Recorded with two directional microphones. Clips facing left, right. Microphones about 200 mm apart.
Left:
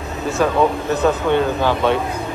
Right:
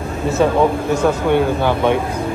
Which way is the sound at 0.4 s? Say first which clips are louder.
Right 2 dB; 20° right (ahead or behind).